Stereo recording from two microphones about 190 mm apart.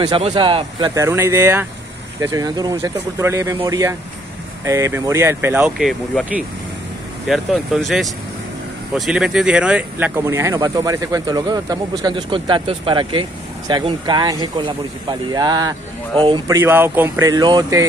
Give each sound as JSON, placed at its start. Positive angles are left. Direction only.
{"t": 0.0, "sound": "speech", "side_deg": -25}